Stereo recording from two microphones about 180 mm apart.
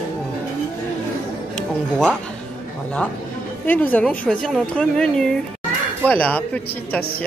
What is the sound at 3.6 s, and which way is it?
A man's voice, 10° left (ahead or behind).